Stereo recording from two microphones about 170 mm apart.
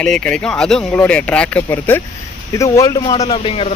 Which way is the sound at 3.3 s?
35° left (ahead or behind).